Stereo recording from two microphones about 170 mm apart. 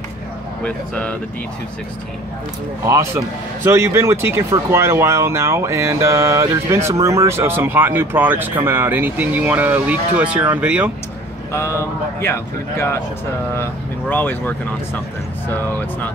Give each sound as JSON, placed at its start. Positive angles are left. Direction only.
{"t": 0.7, "sound": "speech", "side_deg": 10}
{"t": 2.9, "sound": "speech", "side_deg": -15}
{"t": 11.5, "sound": "speech", "side_deg": 15}